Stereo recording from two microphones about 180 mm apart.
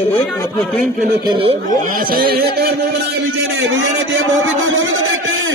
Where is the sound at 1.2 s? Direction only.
30° right (ahead or behind).